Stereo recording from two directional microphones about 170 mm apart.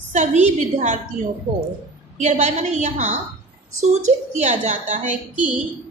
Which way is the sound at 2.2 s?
45° right (ahead or behind).